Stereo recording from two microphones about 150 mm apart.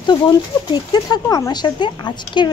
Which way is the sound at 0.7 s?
30° left (ahead or behind).